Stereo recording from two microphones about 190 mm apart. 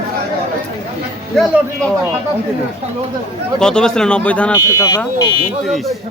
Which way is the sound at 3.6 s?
5° left (ahead or behind).